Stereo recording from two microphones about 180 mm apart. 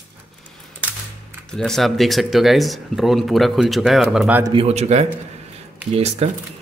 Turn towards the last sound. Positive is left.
turn(degrees=-35)  # may be behind; listen again after turning